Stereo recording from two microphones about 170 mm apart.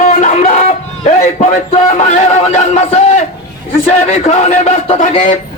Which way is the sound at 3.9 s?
40° left (ahead or behind).